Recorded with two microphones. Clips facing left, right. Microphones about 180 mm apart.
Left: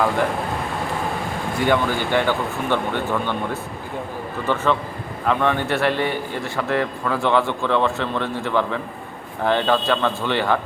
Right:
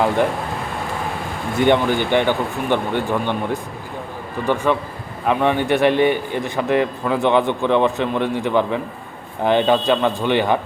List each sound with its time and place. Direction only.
1.5 s a man's voice: 20° right (ahead or behind)